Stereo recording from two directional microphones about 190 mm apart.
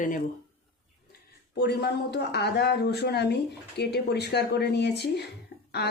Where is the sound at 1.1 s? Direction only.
60° left (ahead or behind).